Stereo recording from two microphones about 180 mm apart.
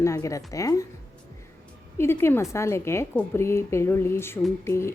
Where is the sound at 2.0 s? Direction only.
15° left (ahead or behind).